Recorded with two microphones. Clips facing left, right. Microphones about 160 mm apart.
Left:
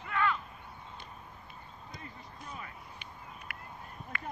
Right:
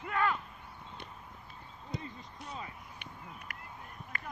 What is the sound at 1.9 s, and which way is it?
Basketball bounce, 70° right (ahead or behind).